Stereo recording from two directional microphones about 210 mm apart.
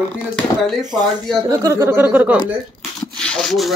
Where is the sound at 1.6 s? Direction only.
15° right (ahead or behind).